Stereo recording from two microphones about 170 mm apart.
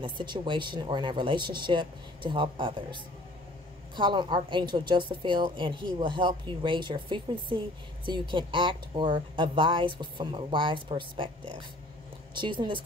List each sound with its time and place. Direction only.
0.0 s speech: 25° right (ahead or behind)
12.4 s speech: 30° right (ahead or behind)